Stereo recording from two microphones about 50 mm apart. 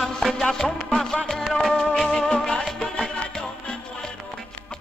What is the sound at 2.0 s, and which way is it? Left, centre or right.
Music, centre.